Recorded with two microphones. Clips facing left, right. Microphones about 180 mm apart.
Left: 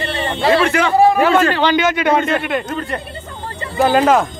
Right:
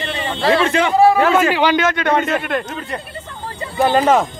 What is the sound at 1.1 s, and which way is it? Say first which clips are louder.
Speech: left 1 dB; centre (ahead or behind).